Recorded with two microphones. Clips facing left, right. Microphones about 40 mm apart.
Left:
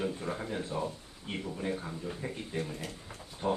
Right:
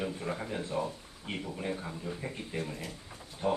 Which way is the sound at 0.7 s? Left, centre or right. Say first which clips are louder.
Right 2 dB; right.